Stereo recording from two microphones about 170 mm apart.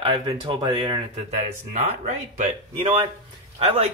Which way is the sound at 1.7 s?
40° right (ahead or behind).